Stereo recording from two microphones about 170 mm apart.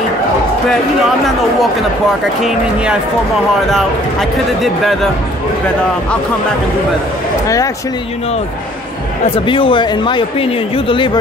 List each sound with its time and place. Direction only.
1.2 s speech: centre (ahead or behind)
7.4 s speech: 20° left (ahead or behind)
9.5 s speech: 30° left (ahead or behind)